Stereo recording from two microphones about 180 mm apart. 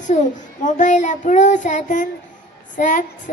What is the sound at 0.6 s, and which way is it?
Speech, 45° left (ahead or behind).